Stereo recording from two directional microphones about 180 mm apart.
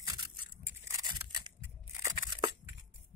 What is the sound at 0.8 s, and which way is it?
Crushing, 20° right (ahead or behind).